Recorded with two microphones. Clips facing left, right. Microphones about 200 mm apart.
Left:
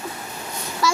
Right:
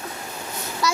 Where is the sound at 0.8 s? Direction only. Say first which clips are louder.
Left 2 dB; centre (ahead or behind).